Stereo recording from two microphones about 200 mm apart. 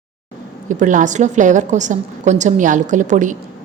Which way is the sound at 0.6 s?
40° right (ahead or behind).